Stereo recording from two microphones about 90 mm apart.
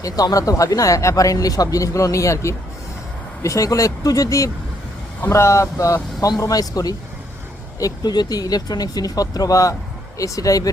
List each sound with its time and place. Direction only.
0.0 s speech: 40° left (ahead or behind)